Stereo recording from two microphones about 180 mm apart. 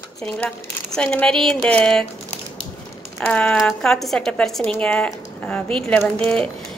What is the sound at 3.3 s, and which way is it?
Speech, 5° left (ahead or behind).